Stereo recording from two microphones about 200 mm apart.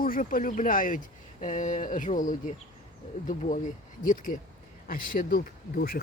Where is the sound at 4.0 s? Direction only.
40° left (ahead or behind).